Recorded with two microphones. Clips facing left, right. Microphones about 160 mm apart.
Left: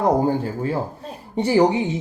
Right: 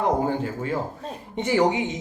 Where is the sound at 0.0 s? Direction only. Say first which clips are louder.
Left 4 dB; 35° left (ahead or behind).